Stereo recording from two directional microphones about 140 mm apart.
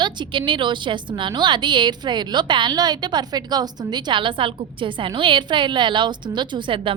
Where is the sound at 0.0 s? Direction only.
35° right (ahead or behind).